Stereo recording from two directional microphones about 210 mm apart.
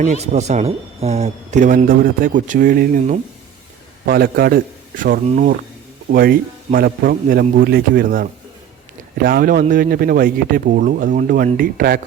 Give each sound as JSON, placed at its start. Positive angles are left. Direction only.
{"t": 0.0, "sound": "speech", "side_deg": -35}